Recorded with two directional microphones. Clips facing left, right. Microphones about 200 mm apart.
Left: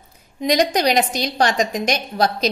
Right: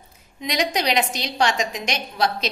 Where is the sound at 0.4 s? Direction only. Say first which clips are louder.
Left 6 dB; 40° left (ahead or behind).